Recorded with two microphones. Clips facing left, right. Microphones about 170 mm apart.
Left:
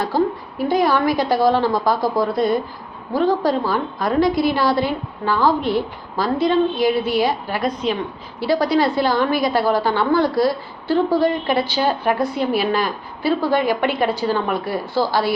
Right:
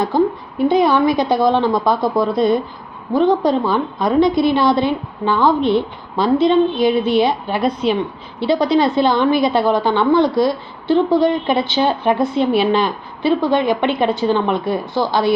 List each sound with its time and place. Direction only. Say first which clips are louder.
0.1 s a woman's voice: right 2 dB; 20° right (ahead or behind)